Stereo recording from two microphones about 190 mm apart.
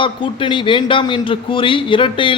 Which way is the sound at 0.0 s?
25° left (ahead or behind).